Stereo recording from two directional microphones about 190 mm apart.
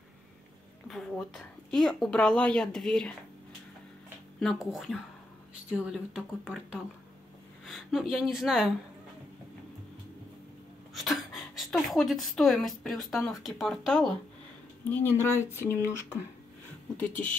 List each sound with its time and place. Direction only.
0.8 s a woman's voice: centre (ahead or behind)
4.4 s a woman's voice: centre (ahead or behind)
11.0 s speech: centre (ahead or behind)